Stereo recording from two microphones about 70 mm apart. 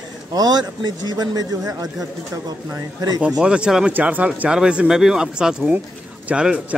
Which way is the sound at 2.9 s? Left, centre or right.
Right.